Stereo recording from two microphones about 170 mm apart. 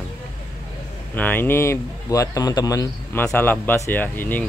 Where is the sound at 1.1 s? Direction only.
10° left (ahead or behind).